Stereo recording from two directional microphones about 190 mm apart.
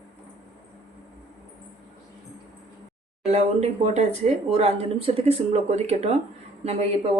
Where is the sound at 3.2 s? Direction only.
35° right (ahead or behind).